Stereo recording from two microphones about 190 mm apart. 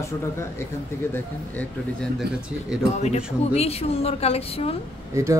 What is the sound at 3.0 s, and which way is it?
A woman's voice, 35° left (ahead or behind).